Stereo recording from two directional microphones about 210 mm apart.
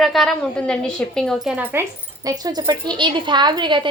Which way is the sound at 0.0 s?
Centre (ahead or behind).